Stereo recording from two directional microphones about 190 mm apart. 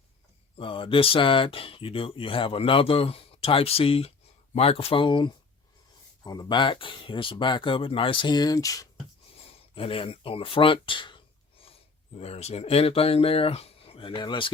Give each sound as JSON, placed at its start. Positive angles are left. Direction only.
{"t": 0.5, "sound": "speech", "side_deg": 30}
{"t": 9.5, "sound": "speech", "side_deg": 30}